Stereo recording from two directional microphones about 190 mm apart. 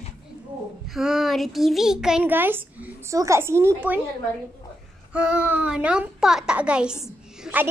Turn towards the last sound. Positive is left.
turn(degrees=-5)  # may be behind; listen again after turning